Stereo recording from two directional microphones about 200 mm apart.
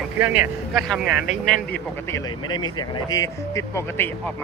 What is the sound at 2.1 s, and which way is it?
Speech, 20° left (ahead or behind).